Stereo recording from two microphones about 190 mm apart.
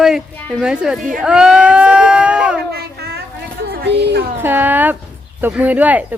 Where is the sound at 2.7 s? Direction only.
55° right (ahead or behind).